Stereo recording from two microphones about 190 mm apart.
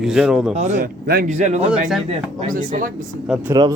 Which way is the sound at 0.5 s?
40° right (ahead or behind).